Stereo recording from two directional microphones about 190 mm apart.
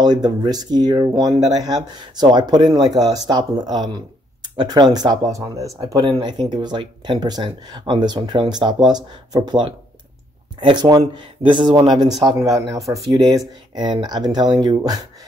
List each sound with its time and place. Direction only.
0.0 s speech: 20° right (ahead or behind)
12.8 s speech: centre (ahead or behind)
13.1 s speech: 20° right (ahead or behind)